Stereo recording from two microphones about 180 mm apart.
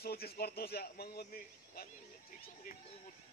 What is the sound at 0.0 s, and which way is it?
Speech, 60° left (ahead or behind).